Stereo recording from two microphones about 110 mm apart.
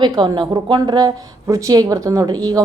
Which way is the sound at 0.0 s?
45° right (ahead or behind).